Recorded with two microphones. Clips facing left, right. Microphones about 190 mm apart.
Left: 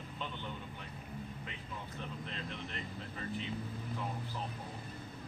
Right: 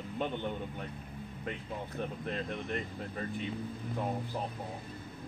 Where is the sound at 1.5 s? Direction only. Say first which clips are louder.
Right 7 dB; 50° right (ahead or behind).